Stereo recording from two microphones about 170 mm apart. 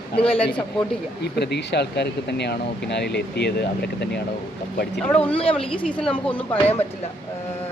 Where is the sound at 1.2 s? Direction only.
75° left (ahead or behind).